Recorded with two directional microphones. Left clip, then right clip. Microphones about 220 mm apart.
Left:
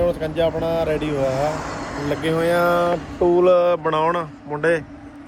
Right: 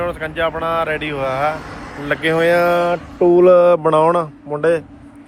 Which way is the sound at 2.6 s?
80° right.